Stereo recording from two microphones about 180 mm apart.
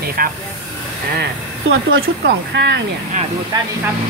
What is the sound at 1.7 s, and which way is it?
Speech, 80° right.